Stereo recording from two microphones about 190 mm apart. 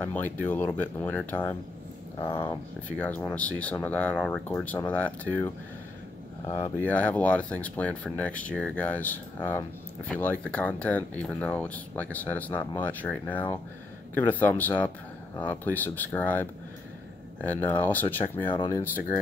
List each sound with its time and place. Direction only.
0.0 s speech: 10° left (ahead or behind)
6.9 s speech: 5° left (ahead or behind)
18.5 s speech: 25° left (ahead or behind)